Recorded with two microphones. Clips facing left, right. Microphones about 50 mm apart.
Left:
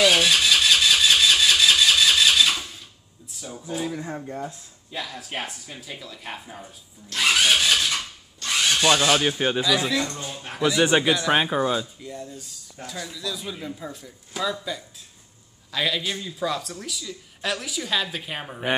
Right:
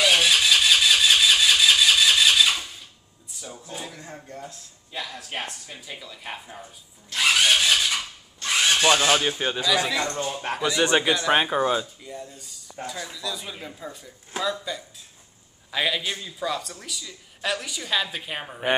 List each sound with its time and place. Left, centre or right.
0.0 s vehicle: centre
3.3 s a sound: centre
4.9 s speech: centre
8.4 s a sound: right
9.4 s speech: centre
10.0 s speech: right
10.6 s speech: centre
15.7 s speech: centre